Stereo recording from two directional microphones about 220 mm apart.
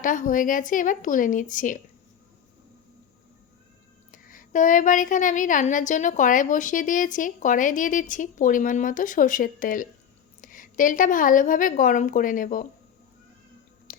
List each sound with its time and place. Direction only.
0.0 s a woman's voice: 35° left (ahead or behind)
4.1 s a woman's voice: 35° left (ahead or behind)
13.9 s music: 40° left (ahead or behind)